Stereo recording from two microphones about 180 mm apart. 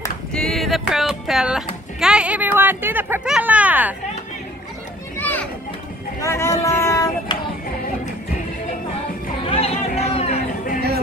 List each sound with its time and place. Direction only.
0.3 s a sound: 5° left (ahead or behind)
2.0 s speech: 5° right (ahead or behind)
5.1 s children playing: 10° left (ahead or behind)
6.2 s speech: 15° left (ahead or behind)
6.6 s vehicle: 15° left (ahead or behind)
9.4 s chatter: 30° left (ahead or behind)